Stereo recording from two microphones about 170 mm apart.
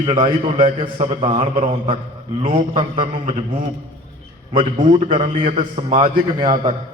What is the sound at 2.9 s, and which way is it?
Speech, 50° right (ahead or behind).